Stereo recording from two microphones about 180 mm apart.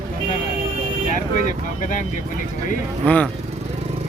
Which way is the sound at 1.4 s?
45° left (ahead or behind).